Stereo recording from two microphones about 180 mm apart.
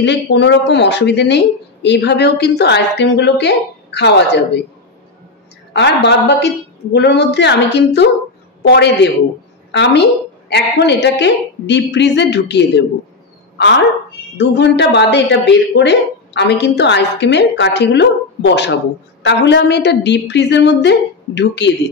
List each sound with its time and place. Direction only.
0.0 s speech: 70° left (ahead or behind)
5.7 s a woman's voice: 75° left (ahead or behind)
14.3 s speech: 75° left (ahead or behind)